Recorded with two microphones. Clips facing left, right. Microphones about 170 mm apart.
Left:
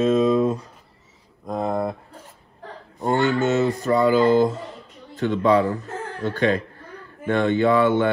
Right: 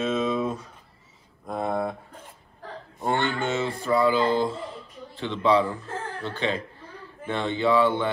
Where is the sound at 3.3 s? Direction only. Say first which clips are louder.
Left 7 dB; 40° left (ahead or behind).